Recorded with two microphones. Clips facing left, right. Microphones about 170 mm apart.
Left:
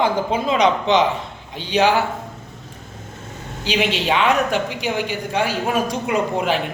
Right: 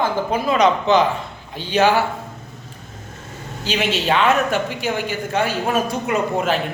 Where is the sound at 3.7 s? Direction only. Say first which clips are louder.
Even; 10° left (ahead or behind).